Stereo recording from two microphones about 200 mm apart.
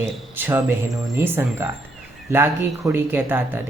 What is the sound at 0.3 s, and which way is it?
Speech, 10° right (ahead or behind).